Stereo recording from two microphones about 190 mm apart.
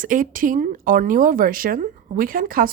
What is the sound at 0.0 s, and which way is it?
Speech, 45° right (ahead or behind).